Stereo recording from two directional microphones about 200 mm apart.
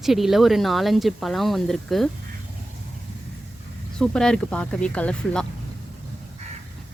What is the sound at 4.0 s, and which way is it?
Speech, 5° left (ahead or behind).